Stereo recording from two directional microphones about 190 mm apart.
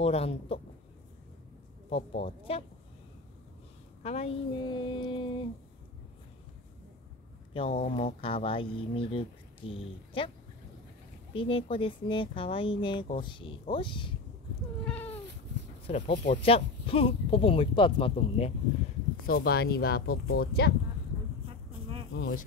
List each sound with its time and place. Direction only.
0.0 s speech: 30° left (ahead or behind)
1.9 s speech: 30° left (ahead or behind)
4.0 s speech: 35° left (ahead or behind)
7.9 s speech: 30° left (ahead or behind)
11.3 s speech: 30° left (ahead or behind)
14.9 s cat: 10° left (ahead or behind)
15.9 s speech: 30° left (ahead or behind)
19.2 s speech: 55° left (ahead or behind)
21.5 s insect: 30° right (ahead or behind)
22.1 s speech: 60° left (ahead or behind)